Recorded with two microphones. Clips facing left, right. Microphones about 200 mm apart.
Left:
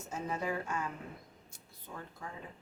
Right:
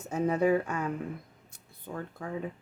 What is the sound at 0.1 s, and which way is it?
Speech, 60° right (ahead or behind).